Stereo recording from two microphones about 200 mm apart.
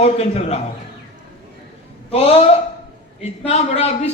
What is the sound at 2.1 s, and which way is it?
A man's voice, 30° left (ahead or behind).